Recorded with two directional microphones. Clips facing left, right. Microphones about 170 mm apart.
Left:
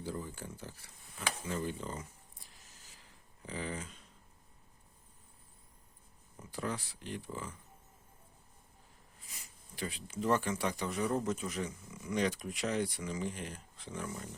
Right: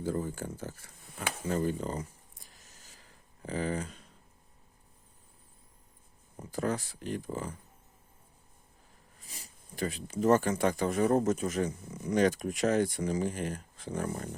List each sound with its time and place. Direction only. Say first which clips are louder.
0.0 s speech: right 8 dB; 45° right (ahead or behind)
3.4 s speech: right 7 dB; 45° right (ahead or behind)
6.3 s speech: right 7 dB; 45° right (ahead or behind)
9.2 s a sound: right 5 dB; 35° right (ahead or behind)
9.8 s speech: right 7 dB; 45° right (ahead or behind)